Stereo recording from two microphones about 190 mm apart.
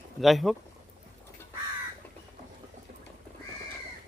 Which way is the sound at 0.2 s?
Centre (ahead or behind).